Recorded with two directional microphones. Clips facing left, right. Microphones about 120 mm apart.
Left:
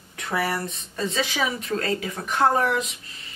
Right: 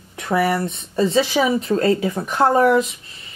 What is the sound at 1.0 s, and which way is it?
Speech, 30° right (ahead or behind).